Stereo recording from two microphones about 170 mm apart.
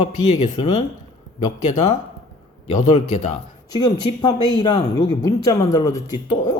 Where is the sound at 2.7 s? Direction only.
40° left (ahead or behind).